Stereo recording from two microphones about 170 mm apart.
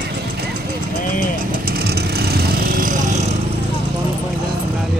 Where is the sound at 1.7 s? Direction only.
65° right (ahead or behind).